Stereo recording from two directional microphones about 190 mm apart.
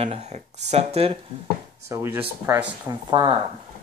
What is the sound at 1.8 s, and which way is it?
Speech, 15° right (ahead or behind).